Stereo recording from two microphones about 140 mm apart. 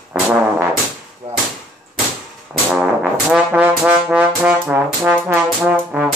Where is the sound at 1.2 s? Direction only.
50° right (ahead or behind).